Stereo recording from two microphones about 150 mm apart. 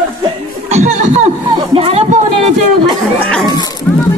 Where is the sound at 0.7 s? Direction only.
50° right (ahead or behind).